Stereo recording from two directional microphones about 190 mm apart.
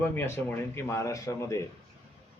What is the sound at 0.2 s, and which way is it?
Speech, 15° left (ahead or behind).